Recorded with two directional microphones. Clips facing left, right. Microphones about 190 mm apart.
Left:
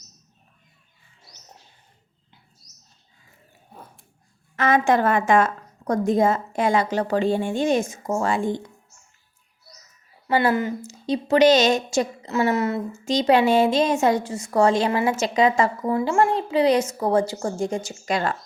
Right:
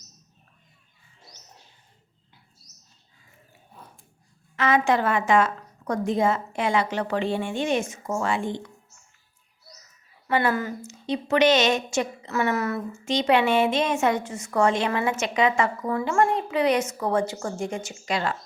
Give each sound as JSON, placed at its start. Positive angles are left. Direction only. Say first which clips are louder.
{"t": 4.5, "sound": "a woman's voice", "louder": "left 3 dB", "side_deg": 45}
{"t": 10.2, "sound": "a woman's voice", "louder": "left 3 dB", "side_deg": 30}
{"t": 10.8, "sound": "a woman's voice", "louder": "left 3 dB", "side_deg": 35}
{"t": 13.1, "sound": "a woman's voice", "louder": "left 3 dB", "side_deg": 40}